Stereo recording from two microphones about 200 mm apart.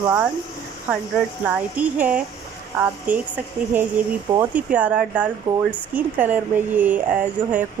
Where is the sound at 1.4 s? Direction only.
5° right (ahead or behind).